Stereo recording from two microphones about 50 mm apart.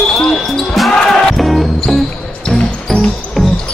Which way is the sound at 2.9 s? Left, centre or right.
Centre.